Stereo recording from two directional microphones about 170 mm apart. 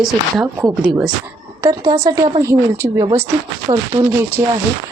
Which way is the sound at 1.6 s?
25° right (ahead or behind).